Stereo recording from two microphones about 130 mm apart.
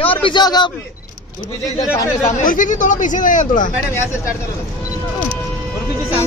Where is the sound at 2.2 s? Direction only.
90° left.